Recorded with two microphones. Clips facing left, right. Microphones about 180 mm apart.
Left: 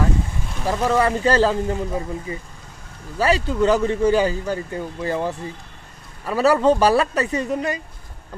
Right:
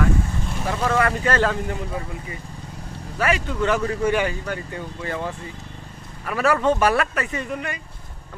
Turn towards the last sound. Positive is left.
turn(degrees=35)  # may be behind; listen again after turning